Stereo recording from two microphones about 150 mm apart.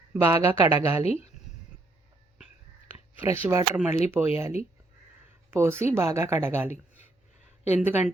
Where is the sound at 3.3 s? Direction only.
15° right (ahead or behind).